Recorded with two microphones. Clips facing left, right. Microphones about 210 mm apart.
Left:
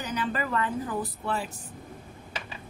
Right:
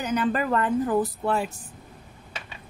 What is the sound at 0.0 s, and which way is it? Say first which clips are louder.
A woman's voice: right 6 dB; 50° right (ahead or behind).